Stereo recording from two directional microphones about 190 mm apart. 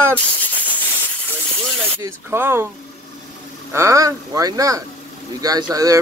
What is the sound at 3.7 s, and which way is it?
Speech, 15° right (ahead or behind).